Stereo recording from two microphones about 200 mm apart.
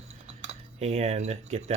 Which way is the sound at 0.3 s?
35° right (ahead or behind).